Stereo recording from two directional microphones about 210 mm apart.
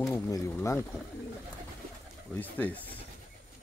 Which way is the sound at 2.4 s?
10° left (ahead or behind).